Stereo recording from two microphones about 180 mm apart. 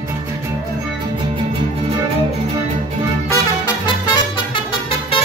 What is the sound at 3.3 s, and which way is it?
Music, 25° left (ahead or behind).